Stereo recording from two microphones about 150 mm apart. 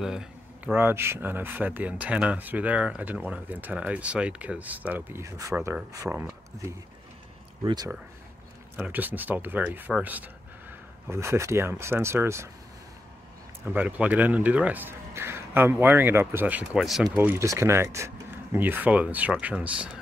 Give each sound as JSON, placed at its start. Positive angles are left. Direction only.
{"t": 0.0, "sound": "speech", "side_deg": -5}
{"t": 8.7, "sound": "speech", "side_deg": -10}
{"t": 13.7, "sound": "speech", "side_deg": -10}